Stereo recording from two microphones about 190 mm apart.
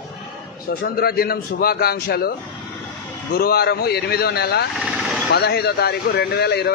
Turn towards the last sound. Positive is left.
turn(degrees=60)  # may be behind; listen again after turning